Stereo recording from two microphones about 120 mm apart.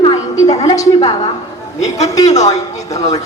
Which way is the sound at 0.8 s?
30° left (ahead or behind).